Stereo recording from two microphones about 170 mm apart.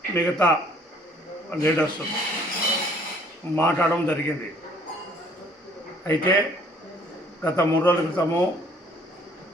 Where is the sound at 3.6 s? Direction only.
10° left (ahead or behind).